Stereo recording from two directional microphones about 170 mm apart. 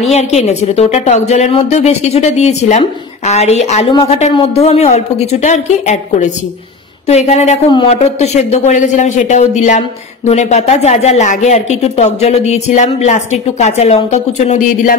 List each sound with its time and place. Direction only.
0.0 s speech: 40° left (ahead or behind)